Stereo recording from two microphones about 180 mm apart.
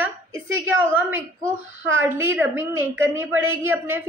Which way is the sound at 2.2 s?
10° right (ahead or behind).